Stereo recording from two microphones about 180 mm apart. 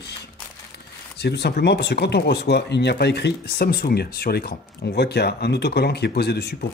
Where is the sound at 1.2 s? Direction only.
65° left (ahead or behind).